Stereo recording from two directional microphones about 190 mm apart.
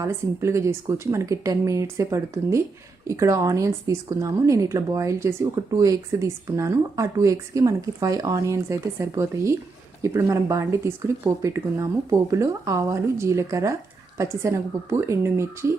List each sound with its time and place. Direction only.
0.0 s a woman's voice: 15° right (ahead or behind)